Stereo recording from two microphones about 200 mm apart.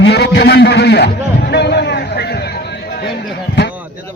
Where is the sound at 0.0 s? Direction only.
55° left (ahead or behind).